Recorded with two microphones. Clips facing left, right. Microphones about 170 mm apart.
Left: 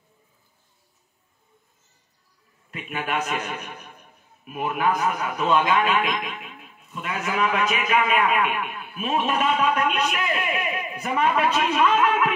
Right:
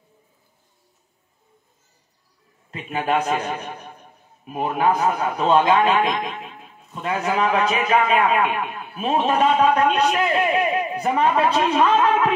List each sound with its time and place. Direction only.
2.7 s a man's voice: 30° right (ahead or behind)